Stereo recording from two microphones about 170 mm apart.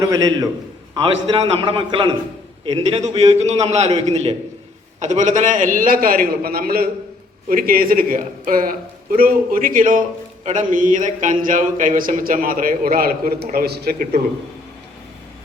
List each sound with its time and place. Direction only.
0.0 s a man's voice: 20° right (ahead or behind)
0.9 s a man's voice: 30° right (ahead or behind); by 14.1 s 65° right (ahead or behind)